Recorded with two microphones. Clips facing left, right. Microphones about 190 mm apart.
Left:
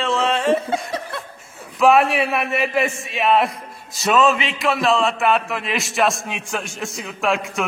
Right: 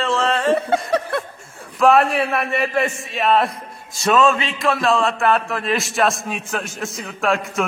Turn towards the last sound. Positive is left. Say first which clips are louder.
# right 1 dB
turn(degrees=0)  # may be behind; listen again after turning